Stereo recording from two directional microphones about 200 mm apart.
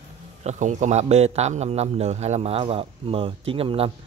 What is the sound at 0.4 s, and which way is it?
A man's voice, 35° right (ahead or behind).